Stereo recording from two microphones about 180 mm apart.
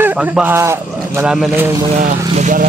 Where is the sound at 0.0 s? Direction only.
10° right (ahead or behind).